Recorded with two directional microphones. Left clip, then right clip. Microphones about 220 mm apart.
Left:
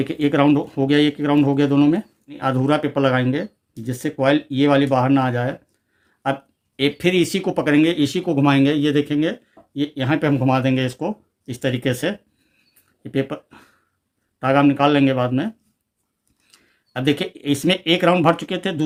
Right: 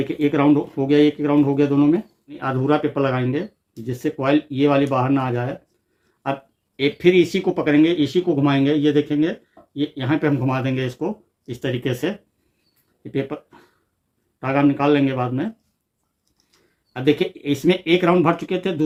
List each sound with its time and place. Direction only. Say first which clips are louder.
0.0 s speech: left 1 dB; 45° left (ahead or behind)
6.7 s speech: right 2 dB; 45° left (ahead or behind)
16.5 s speech: left 6 dB; 45° left (ahead or behind)